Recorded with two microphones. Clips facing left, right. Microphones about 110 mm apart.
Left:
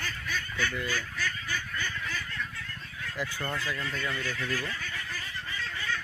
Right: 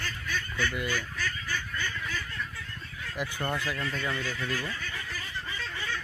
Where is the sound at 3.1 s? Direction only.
20° right (ahead or behind).